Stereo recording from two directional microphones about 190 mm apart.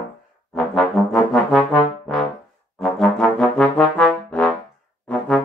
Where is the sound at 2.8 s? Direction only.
Centre (ahead or behind).